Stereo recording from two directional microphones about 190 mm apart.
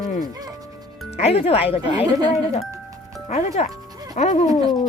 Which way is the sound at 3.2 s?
35° left (ahead or behind).